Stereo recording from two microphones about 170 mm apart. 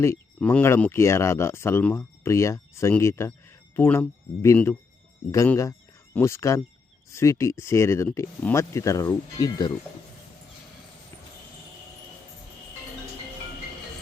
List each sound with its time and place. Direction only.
0.0 s speech: 10° left (ahead or behind)